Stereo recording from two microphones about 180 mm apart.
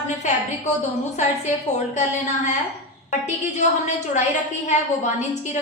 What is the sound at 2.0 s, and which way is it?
A woman's voice, 40° left (ahead or behind).